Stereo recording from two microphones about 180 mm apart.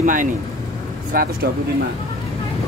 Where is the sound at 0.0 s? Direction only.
45° right (ahead or behind).